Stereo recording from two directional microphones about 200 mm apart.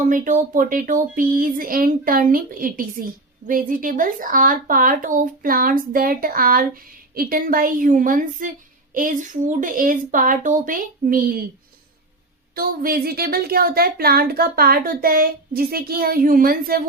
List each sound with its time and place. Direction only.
0.0 s speech: 40° right (ahead or behind)
12.5 s speech: 45° right (ahead or behind)